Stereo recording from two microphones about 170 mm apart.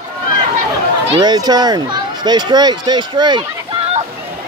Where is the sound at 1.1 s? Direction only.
25° right (ahead or behind).